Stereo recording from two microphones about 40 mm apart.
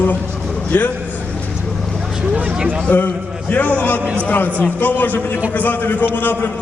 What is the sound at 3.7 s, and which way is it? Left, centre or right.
A man's voice, left.